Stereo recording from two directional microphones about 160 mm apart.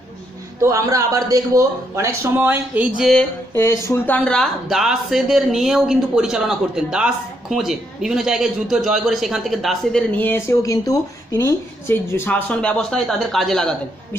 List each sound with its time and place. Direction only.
0.6 s a man's voice: 20° right (ahead or behind)
3.5 s speech: 20° left (ahead or behind)